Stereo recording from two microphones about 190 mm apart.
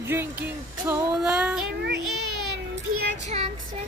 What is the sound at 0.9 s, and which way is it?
Music, 5° right (ahead or behind).